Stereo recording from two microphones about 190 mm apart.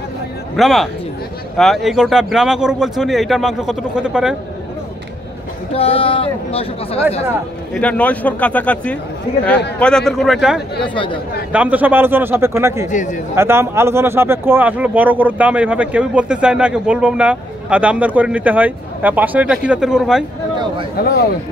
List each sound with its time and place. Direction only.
0.6 s speech: centre (ahead or behind)
5.7 s speech: 30° left (ahead or behind)
7.8 s speech: 5° left (ahead or behind); by 12.8 s 15° right (ahead or behind)
12.8 s speech: 40° left (ahead or behind)
13.3 s speech: 15° right (ahead or behind)
21.0 s speech: 55° left (ahead or behind)